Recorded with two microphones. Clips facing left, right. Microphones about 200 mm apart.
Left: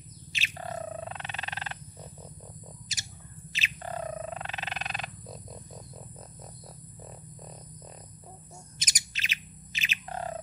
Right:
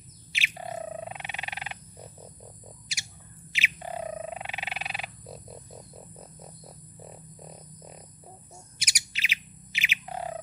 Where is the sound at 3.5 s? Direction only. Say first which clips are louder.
Right 1 dB; 15° right (ahead or behind).